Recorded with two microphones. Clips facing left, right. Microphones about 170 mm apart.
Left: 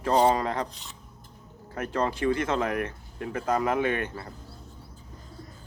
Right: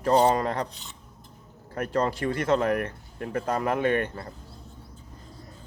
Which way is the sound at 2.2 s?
40° right (ahead or behind).